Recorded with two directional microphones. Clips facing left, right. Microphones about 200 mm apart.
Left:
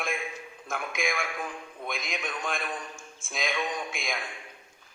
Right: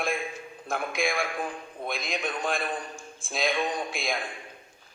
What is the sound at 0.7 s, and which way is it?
A man's voice, 35° right (ahead or behind).